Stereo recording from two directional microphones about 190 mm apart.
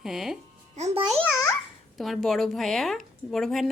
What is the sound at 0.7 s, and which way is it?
Speech, 35° right (ahead or behind).